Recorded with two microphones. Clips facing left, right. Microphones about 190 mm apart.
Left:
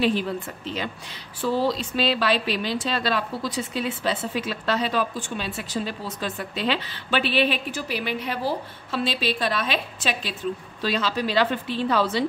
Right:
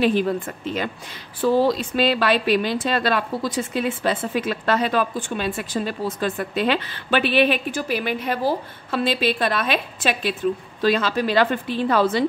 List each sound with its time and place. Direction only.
0.0 s speech: 50° right (ahead or behind)
1.4 s speech: 50° right (ahead or behind)